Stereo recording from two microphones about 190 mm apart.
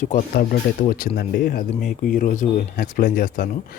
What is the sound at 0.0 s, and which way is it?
Speech, 45° left (ahead or behind).